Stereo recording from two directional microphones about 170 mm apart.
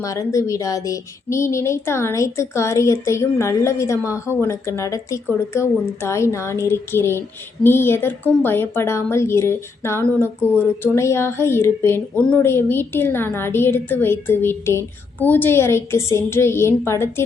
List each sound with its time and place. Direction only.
0.0 s a woman's voice: 20° left (ahead or behind)